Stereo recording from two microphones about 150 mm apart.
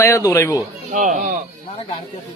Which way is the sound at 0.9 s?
60° right (ahead or behind).